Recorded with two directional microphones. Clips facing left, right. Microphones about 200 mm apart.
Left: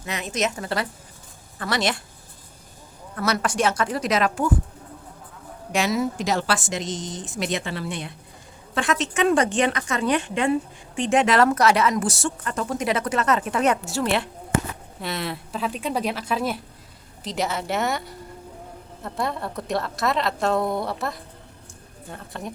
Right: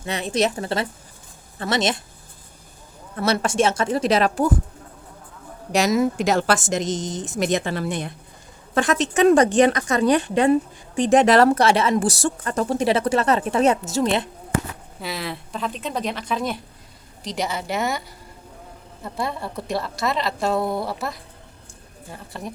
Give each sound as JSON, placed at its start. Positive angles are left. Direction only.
{"t": 0.0, "sound": "a woman's voice", "side_deg": -30}
{"t": 3.2, "sound": "a woman's voice", "side_deg": -25}
{"t": 5.7, "sound": "a woman's voice", "side_deg": -45}
{"t": 15.0, "sound": "a woman's voice", "side_deg": 0}